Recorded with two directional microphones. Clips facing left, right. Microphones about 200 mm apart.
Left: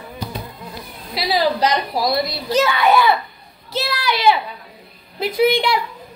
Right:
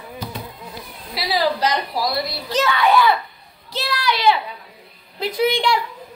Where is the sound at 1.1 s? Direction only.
20° left (ahead or behind).